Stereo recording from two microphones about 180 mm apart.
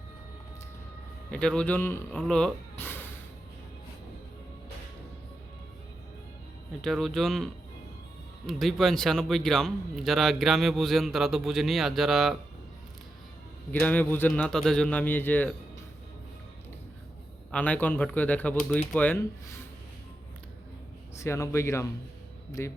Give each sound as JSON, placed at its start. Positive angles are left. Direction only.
{"t": 1.3, "sound": "speech", "side_deg": 5}
{"t": 6.8, "sound": "speech", "side_deg": 0}
{"t": 13.7, "sound": "speech", "side_deg": 10}
{"t": 17.5, "sound": "speech", "side_deg": 10}
{"t": 21.2, "sound": "speech", "side_deg": 15}